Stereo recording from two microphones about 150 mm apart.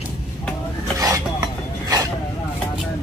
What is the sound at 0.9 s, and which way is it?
Cutlery, 25° right (ahead or behind).